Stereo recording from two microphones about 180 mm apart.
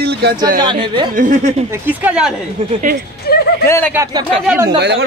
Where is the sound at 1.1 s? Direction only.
45° right (ahead or behind).